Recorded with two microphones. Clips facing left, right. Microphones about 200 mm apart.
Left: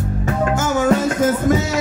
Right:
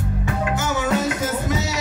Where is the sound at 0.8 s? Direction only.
50° left (ahead or behind).